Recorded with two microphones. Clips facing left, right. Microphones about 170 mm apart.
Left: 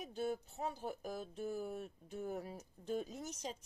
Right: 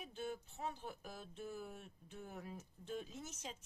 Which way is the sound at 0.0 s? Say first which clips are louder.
Left 6 dB; 40° left (ahead or behind).